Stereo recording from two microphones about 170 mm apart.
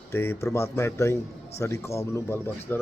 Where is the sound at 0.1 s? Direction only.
15° left (ahead or behind).